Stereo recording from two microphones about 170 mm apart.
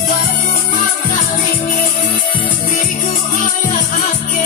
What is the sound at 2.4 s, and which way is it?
Music, 50° left (ahead or behind).